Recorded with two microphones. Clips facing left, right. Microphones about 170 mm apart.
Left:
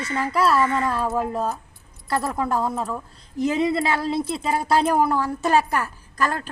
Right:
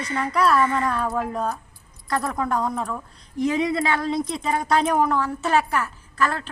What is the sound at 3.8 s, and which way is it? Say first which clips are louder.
A woman's voice: even; 30° left (ahead or behind).